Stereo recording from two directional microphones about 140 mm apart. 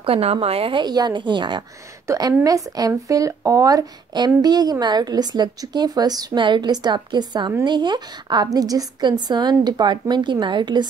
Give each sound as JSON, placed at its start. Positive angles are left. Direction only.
{"t": 0.0, "sound": "a woman's voice", "side_deg": -45}